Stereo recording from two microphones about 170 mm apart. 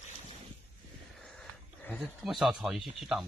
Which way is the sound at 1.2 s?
5° left (ahead or behind).